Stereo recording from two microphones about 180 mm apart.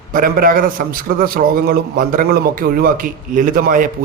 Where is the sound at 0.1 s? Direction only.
50° right (ahead or behind).